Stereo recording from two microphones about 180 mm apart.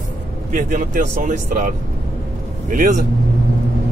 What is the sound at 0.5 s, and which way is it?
Speech, 50° right (ahead or behind).